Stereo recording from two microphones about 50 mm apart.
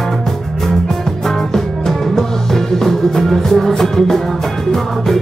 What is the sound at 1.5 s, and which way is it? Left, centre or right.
Music, centre.